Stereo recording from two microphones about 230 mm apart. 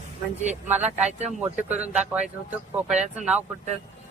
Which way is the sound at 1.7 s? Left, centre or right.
Centre.